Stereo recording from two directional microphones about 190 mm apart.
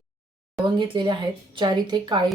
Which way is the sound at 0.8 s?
25° right (ahead or behind).